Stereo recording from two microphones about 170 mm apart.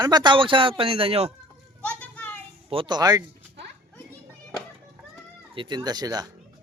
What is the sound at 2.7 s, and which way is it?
Speech, 30° right (ahead or behind).